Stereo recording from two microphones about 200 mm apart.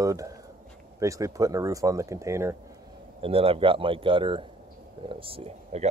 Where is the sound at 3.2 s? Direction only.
30° right (ahead or behind).